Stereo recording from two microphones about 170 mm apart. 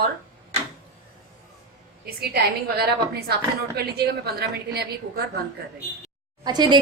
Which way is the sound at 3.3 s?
70° right (ahead or behind).